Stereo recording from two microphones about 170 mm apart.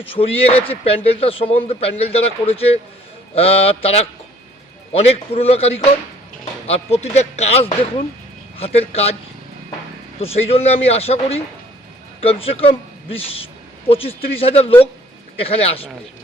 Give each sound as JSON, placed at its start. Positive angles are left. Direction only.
{"t": 0.0, "sound": "speech", "side_deg": 35}
{"t": 4.9, "sound": "speech", "side_deg": 35}
{"t": 10.2, "sound": "speech", "side_deg": 35}